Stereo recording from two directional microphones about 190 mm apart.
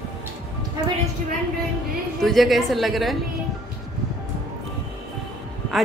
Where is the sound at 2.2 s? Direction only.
Centre (ahead or behind).